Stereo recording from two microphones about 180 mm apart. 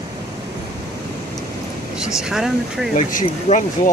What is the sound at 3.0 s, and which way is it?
Speech, 45° left (ahead or behind).